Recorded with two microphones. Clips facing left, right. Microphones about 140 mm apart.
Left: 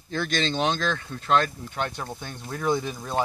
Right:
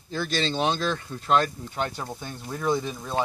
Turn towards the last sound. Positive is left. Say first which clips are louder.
# even
turn(degrees=0)  # may be behind; listen again after turning